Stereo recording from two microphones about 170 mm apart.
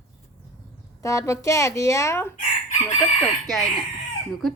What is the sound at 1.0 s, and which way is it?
Speech, 20° left (ahead or behind).